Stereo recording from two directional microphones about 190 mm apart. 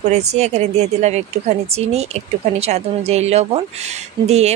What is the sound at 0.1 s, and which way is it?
Speech, 35° right (ahead or behind).